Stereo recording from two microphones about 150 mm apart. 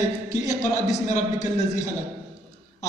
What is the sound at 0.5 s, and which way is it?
A man's voice, 50° left (ahead or behind).